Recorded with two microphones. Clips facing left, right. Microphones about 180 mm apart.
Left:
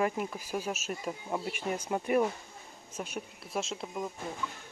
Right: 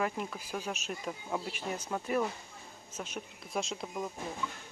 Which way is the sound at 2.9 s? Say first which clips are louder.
Left 3 dB; 10° left (ahead or behind).